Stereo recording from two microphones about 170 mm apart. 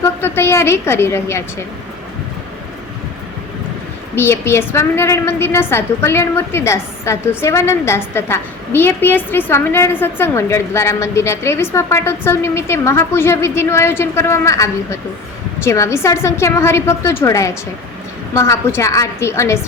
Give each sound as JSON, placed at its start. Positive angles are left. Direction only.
{"t": 0.0, "sound": "a woman's voice", "side_deg": 15}
{"t": 4.1, "sound": "a woman's voice", "side_deg": 15}